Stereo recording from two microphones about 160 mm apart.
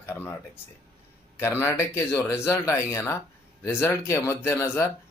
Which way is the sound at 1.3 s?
15° left (ahead or behind).